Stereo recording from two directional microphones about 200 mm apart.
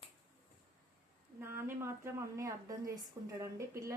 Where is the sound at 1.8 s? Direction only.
15° right (ahead or behind).